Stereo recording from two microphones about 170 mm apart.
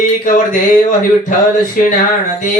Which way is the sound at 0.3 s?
50° left (ahead or behind).